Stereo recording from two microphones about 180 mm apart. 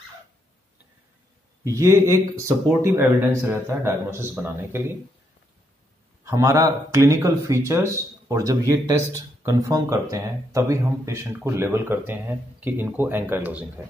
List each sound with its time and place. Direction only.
1.7 s speech: 15° right (ahead or behind)
6.2 s speech: 15° right (ahead or behind)